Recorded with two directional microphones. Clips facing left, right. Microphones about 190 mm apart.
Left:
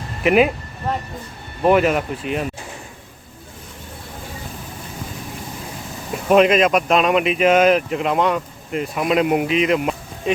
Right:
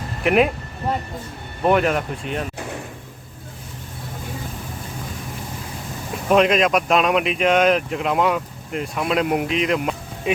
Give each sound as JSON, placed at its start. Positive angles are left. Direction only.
{"t": 0.2, "sound": "speech", "side_deg": 0}
{"t": 1.6, "sound": "speech", "side_deg": 5}
{"t": 6.2, "sound": "speech", "side_deg": 0}